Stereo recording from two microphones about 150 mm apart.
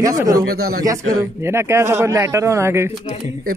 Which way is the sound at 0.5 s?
90° right.